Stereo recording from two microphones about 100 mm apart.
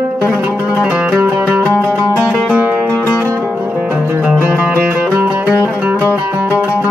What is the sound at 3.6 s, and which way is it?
Music, 15° right (ahead or behind).